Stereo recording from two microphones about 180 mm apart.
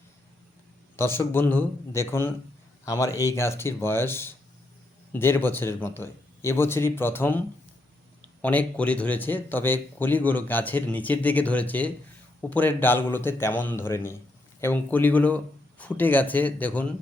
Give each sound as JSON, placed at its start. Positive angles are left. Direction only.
{"t": 0.9, "sound": "a man's voice", "side_deg": 15}